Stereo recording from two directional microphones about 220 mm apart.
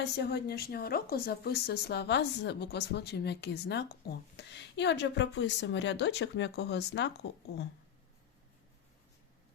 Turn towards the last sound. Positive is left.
turn(degrees=50)  # may be behind; listen again after turning